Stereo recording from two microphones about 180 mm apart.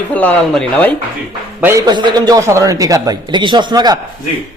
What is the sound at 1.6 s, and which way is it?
A man's voice, 20° right (ahead or behind).